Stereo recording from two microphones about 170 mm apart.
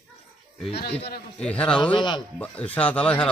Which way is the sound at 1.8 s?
25° left (ahead or behind).